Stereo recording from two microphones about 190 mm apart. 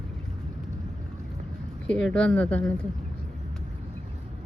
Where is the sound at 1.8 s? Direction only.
5° left (ahead or behind).